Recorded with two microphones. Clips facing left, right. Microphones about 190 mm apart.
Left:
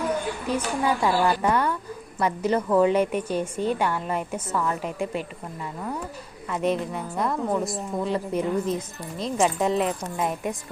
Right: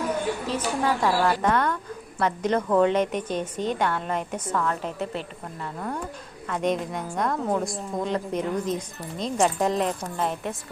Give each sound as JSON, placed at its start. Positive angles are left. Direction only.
{"t": 0.5, "sound": "a woman's voice", "side_deg": 10}
{"t": 6.5, "sound": "a woman's voice", "side_deg": 5}